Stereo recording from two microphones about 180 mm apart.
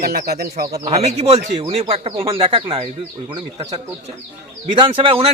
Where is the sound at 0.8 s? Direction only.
35° right (ahead or behind).